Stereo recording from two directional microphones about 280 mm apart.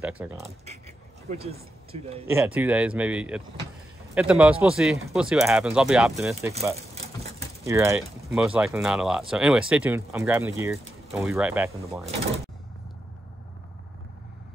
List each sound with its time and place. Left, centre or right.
0.0 s speech: centre
0.7 s a sound: right
2.2 s speech: centre
7.6 s speech: centre